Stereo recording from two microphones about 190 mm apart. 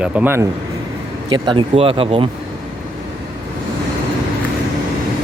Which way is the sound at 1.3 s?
25° right (ahead or behind).